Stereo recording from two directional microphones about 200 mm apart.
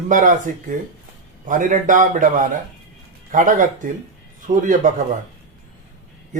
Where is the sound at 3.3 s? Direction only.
40° right (ahead or behind).